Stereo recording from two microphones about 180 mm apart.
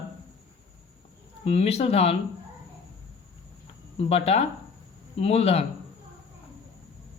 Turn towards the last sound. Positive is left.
turn(degrees=35)  # may be behind; listen again after turning